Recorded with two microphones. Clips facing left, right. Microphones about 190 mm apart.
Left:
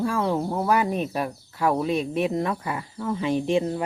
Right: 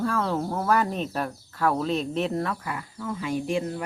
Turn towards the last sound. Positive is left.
turn(degrees=20)  # may be behind; listen again after turning